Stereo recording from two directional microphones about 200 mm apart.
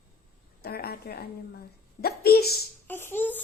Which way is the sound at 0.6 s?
50° left (ahead or behind).